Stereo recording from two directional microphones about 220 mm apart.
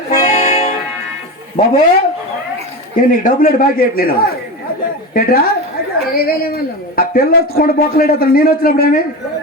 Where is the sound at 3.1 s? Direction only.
40° left (ahead or behind).